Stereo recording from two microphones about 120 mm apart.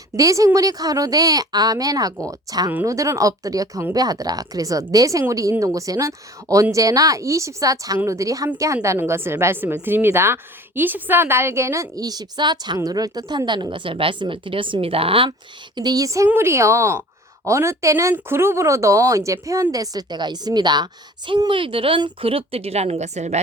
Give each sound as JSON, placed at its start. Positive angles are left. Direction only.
{"t": 0.2, "sound": "a woman's voice", "side_deg": -25}